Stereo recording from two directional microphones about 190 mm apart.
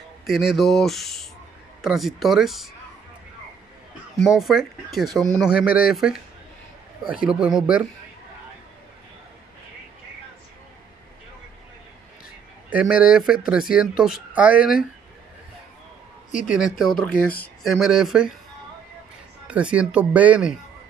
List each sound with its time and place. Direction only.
0.3 s speech: centre (ahead or behind)
4.2 s speech: centre (ahead or behind)
7.2 s speech: 5° right (ahead or behind)
12.6 s speech: 5° right (ahead or behind)
16.3 s speech: 45° left (ahead or behind)
16.5 s speech: centre (ahead or behind)
19.4 s speech: 5° right (ahead or behind)